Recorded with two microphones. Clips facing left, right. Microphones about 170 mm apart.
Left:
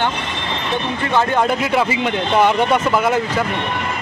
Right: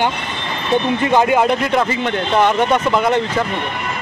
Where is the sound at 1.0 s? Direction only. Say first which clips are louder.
Right 2 dB; 15° right (ahead or behind).